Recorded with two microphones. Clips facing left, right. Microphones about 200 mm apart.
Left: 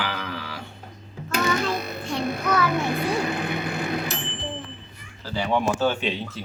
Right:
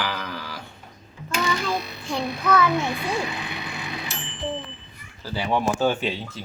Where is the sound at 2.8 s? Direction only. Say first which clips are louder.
Left 2 dB; 50° left (ahead or behind).